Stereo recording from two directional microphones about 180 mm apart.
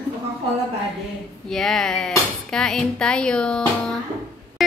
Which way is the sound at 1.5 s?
Centre (ahead or behind).